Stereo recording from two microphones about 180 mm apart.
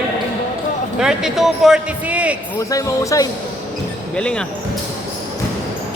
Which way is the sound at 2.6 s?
20° left (ahead or behind).